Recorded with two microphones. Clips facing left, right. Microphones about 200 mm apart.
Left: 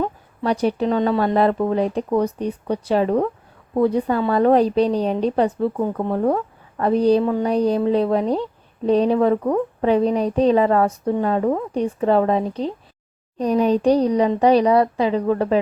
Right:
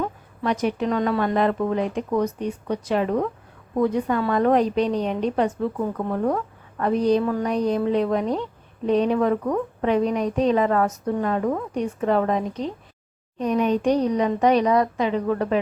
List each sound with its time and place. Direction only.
0.0 s a woman's voice: 35° left (ahead or behind)